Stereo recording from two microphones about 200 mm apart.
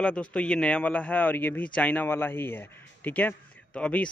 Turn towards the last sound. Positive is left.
turn(degrees=5)  # may be behind; listen again after turning